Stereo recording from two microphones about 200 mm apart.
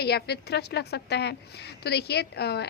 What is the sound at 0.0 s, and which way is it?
A woman's voice, 55° left (ahead or behind).